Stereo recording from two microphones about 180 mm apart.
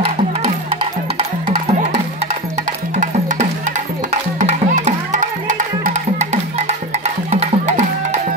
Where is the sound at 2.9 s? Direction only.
40° right (ahead or behind).